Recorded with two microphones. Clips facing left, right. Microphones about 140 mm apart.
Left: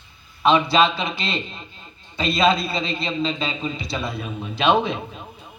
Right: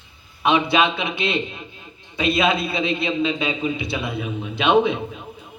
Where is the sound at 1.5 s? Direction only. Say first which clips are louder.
Right 3 dB; 10° right (ahead or behind).